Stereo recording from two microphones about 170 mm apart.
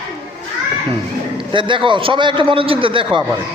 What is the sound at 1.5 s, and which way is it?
A man's voice, 30° right (ahead or behind).